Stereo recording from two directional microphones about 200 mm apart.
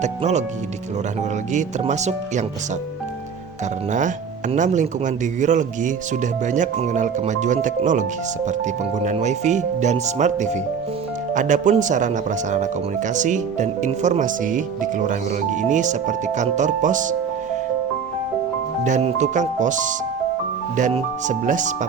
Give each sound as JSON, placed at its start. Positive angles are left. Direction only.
{"t": 0.0, "sound": "speech", "side_deg": -35}
{"t": 1.5, "sound": "speech", "side_deg": -35}
{"t": 3.9, "sound": "speech", "side_deg": -40}
{"t": 18.9, "sound": "speech", "side_deg": -35}